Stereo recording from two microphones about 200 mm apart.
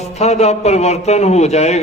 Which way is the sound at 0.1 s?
35° left (ahead or behind).